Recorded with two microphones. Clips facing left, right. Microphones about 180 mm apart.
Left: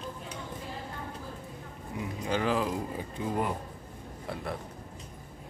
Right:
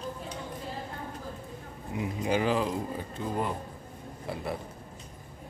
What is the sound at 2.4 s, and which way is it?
Speech, centre (ahead or behind).